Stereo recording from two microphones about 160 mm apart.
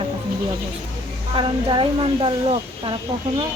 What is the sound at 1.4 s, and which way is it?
Speech, 30° right (ahead or behind).